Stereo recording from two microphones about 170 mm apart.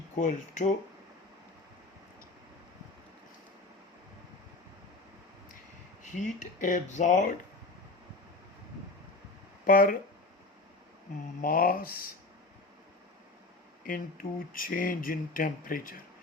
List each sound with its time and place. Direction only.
0.2 s speech: 45° left (ahead or behind)
6.0 s speech: 45° left (ahead or behind)
9.6 s speech: 55° left (ahead or behind)
11.3 s speech: 55° left (ahead or behind)
13.8 s speech: 55° left (ahead or behind)